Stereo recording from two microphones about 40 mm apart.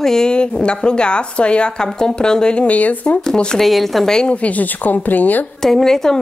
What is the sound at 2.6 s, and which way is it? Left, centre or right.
Speech, left.